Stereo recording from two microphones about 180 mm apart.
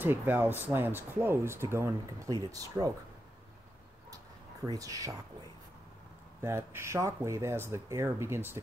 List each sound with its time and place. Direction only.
0.0 s speech: 10° right (ahead or behind)
4.6 s speech: 20° right (ahead or behind)
6.4 s speech: 15° right (ahead or behind)